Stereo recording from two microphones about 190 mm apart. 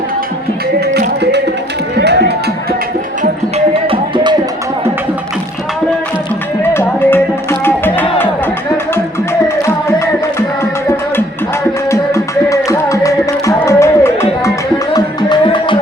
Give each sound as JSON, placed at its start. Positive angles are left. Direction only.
{"t": 0.9, "sound": "music", "side_deg": -60}
{"t": 3.8, "sound": "music", "side_deg": -25}
{"t": 6.7, "sound": "music", "side_deg": 10}
{"t": 11.9, "sound": "music", "side_deg": 15}
{"t": 14.9, "sound": "music", "side_deg": 25}